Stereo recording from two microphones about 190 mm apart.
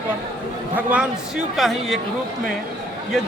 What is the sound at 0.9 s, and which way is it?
Speech, 5° right (ahead or behind).